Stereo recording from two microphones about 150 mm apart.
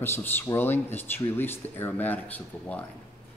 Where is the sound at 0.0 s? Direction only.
15° left (ahead or behind).